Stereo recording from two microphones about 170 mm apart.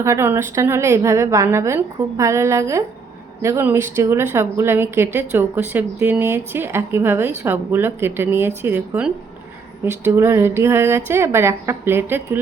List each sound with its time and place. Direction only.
0.0 s a woman's voice: 15° right (ahead or behind)